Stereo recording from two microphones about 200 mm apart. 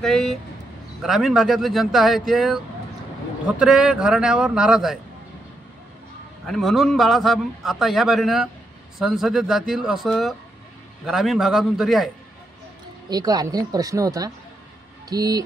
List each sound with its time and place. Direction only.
0.0 s a man's voice: centre (ahead or behind)
6.4 s a man's voice: centre (ahead or behind)
13.1 s speech: 20° right (ahead or behind)